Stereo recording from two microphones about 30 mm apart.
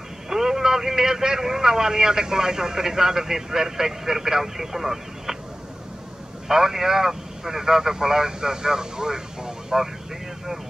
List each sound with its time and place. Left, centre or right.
0.3 s a man's voice: centre
6.4 s a man's voice: centre